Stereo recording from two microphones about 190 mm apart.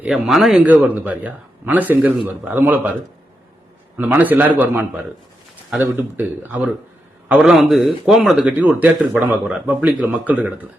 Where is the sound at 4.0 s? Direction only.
10° right (ahead or behind).